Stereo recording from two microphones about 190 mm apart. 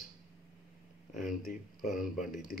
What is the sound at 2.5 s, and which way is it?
Speech, 50° left (ahead or behind).